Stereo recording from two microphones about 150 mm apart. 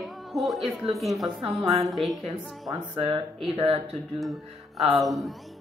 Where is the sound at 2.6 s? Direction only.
35° right (ahead or behind).